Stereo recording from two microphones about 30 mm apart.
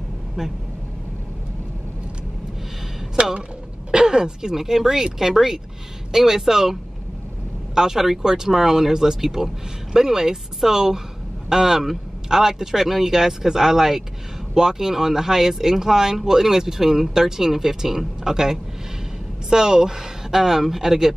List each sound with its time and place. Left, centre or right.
0.4 s speech: centre
3.2 s speech: right
4.0 s a man's voice: right